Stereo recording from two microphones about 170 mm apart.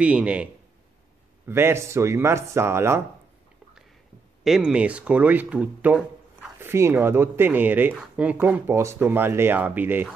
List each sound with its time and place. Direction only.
0.0 s speech: 5° right (ahead or behind)
1.5 s speech: 15° right (ahead or behind)
4.5 s speech: 5° right (ahead or behind)